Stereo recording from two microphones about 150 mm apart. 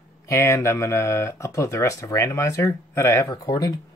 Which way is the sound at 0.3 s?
20° left (ahead or behind).